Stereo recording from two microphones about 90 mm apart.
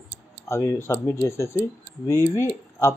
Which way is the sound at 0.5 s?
35° left (ahead or behind).